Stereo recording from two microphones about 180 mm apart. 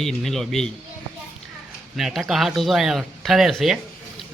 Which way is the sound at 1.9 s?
Centre (ahead or behind).